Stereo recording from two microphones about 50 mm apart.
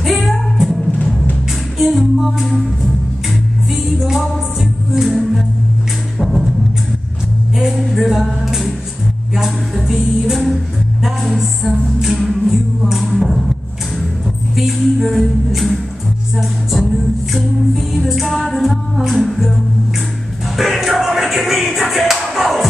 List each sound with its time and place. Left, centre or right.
0.0 s music: centre
1.8 s music: centre
6.1 s a sound: centre
7.5 s music: centre
10.3 s music: centre
14.5 s music: centre